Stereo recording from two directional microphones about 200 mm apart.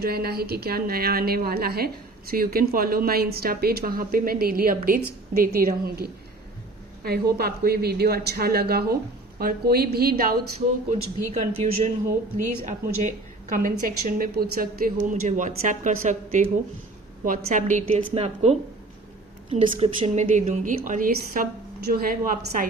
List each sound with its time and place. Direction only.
0.0 s a woman's voice: 50° right (ahead or behind)
11.3 s a woman's voice: 35° right (ahead or behind)
20.0 s a woman's voice: 35° right (ahead or behind)